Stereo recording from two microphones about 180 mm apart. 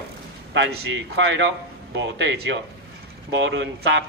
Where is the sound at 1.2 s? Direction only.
85° right.